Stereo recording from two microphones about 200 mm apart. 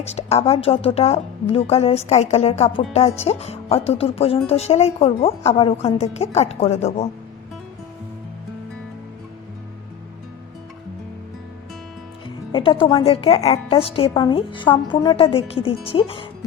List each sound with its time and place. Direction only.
0.0 s a woman's voice: 30° left (ahead or behind)
12.5 s music: 25° left (ahead or behind)
12.8 s a woman's voice: 25° left (ahead or behind)